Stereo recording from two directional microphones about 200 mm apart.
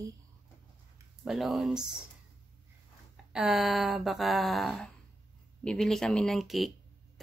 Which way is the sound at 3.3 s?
Centre (ahead or behind).